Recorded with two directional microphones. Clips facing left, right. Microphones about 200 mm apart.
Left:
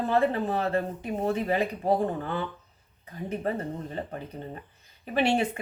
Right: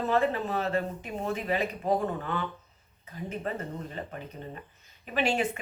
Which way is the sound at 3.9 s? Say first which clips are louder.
Left 4 dB; 35° left (ahead or behind).